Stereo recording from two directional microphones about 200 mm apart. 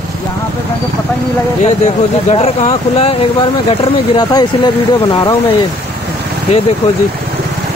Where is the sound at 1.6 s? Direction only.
35° left (ahead or behind).